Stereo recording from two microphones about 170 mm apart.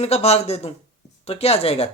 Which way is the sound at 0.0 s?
35° left (ahead or behind).